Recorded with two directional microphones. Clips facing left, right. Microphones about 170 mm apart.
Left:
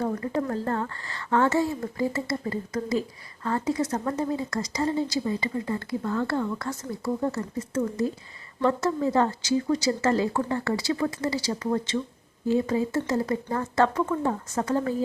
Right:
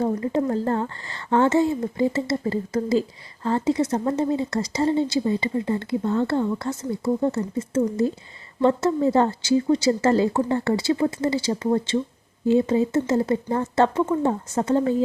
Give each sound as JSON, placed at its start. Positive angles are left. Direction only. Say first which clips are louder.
{"t": 0.0, "sound": "speech", "louder": "right 5 dB", "side_deg": -25}